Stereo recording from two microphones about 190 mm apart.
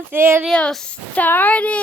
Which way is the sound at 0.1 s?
15° right (ahead or behind).